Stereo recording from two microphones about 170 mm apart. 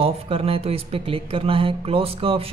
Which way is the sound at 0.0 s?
35° right (ahead or behind).